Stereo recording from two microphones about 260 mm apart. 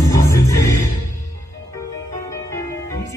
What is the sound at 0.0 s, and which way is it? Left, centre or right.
Music, centre.